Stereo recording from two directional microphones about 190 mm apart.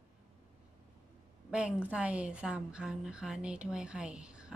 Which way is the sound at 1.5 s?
5° right (ahead or behind).